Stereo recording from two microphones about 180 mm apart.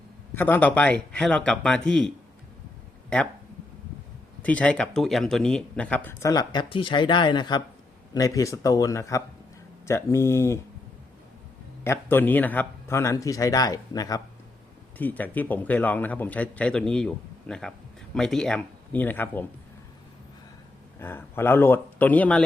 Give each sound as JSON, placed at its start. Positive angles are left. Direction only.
{"t": 0.3, "sound": "a man's voice", "side_deg": 10}
{"t": 4.4, "sound": "a man's voice", "side_deg": 5}
{"t": 11.8, "sound": "a man's voice", "side_deg": 15}
{"t": 14.9, "sound": "a man's voice", "side_deg": 10}
{"t": 21.0, "sound": "a man's voice", "side_deg": 10}